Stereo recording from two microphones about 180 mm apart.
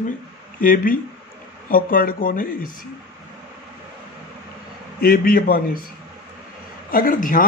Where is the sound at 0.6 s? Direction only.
50° left (ahead or behind).